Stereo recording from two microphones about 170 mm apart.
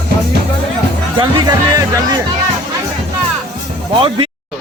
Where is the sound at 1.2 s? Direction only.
25° right (ahead or behind).